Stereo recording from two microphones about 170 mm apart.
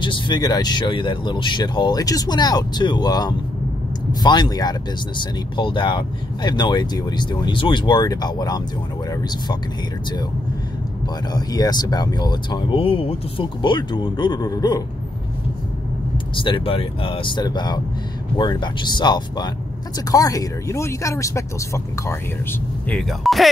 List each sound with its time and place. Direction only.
0.0 s speech: 25° left (ahead or behind)
11.3 s speech: 25° left (ahead or behind)
16.3 s speech: 30° left (ahead or behind); by 23.5 s centre (ahead or behind)